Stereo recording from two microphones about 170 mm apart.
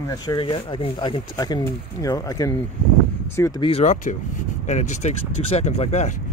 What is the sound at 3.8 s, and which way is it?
Speech, 45° left (ahead or behind).